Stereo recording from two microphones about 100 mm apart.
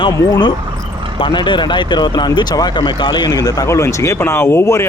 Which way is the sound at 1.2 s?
50° left (ahead or behind).